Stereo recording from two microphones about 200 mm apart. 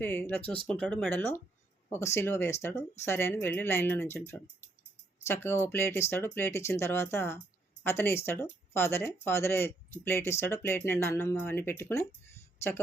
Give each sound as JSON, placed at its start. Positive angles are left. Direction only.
{"t": 0.0, "sound": "speech", "side_deg": 10}